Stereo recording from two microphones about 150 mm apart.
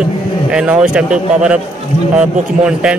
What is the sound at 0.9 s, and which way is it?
Speech, 5° right (ahead or behind).